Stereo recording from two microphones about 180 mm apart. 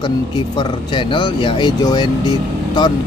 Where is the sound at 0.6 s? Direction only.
25° left (ahead or behind).